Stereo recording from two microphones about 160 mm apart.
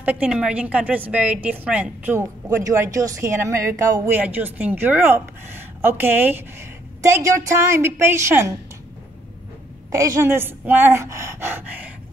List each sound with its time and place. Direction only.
0.0 s a woman's voice: 10° right (ahead or behind)
9.8 s a woman's voice: 15° right (ahead or behind)